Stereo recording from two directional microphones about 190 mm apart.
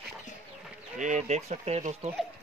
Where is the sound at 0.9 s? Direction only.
40° right (ahead or behind).